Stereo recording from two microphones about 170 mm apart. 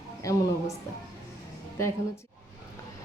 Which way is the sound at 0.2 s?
20° left (ahead or behind).